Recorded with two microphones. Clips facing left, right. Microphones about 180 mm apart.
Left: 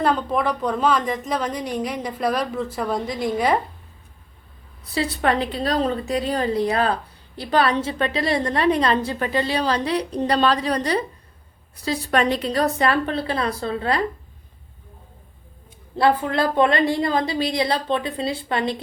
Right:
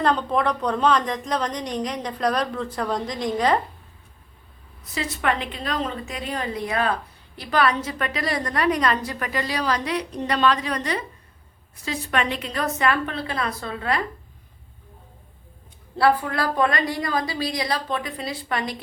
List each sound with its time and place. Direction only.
0.0 s a woman's voice: 5° left (ahead or behind)
4.9 s a woman's voice: 35° left (ahead or behind)
16.0 s a woman's voice: 20° left (ahead or behind)